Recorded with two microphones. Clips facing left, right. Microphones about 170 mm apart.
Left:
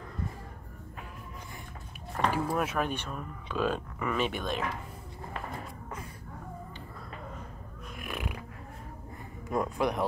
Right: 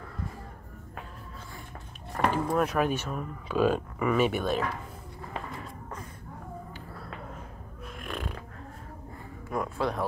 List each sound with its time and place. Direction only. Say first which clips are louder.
2.2 s a sound: right 2 dB; 10° left (ahead or behind)
2.5 s speech: right 4 dB; centre (ahead or behind)
8.0 s snoring: right 1 dB; 10° left (ahead or behind)
9.5 s speech: left 1 dB; 20° left (ahead or behind)